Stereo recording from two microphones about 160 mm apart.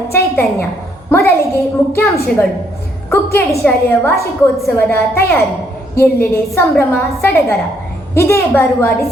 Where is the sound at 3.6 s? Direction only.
10° left (ahead or behind).